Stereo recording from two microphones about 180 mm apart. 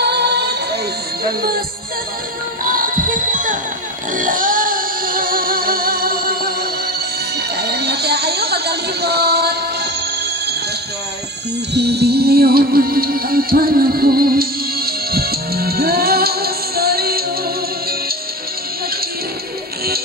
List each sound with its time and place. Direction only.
0.0 s music: 70° right (ahead or behind)
2.6 s music: 50° right (ahead or behind)
7.5 s music: 65° right (ahead or behind)
11.7 s music: 65° right (ahead or behind)